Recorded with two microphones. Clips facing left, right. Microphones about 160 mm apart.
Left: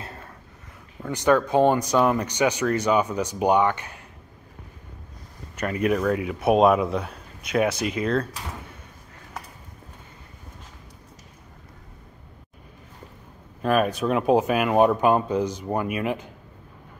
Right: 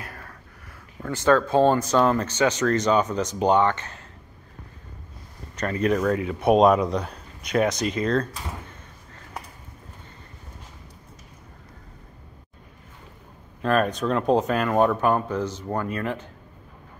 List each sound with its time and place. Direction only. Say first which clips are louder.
0.0 s a sound: left 1 dB; 25° left (ahead or behind)
1.0 s speech: even; 15° left (ahead or behind)
5.6 s speech: even; 10° left (ahead or behind)
13.6 s speech: left 1 dB; 5° left (ahead or behind)